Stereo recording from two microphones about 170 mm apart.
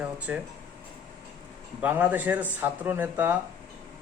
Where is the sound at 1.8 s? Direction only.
10° right (ahead or behind).